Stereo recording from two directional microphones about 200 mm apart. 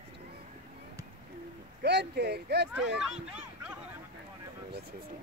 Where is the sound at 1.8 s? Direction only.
55° right (ahead or behind).